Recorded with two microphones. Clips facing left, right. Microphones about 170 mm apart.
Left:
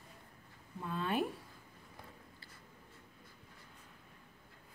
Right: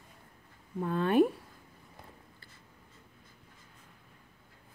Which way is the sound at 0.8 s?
55° right (ahead or behind).